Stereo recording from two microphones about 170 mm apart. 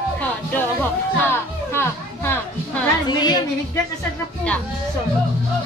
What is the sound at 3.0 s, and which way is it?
Speech, 25° left (ahead or behind).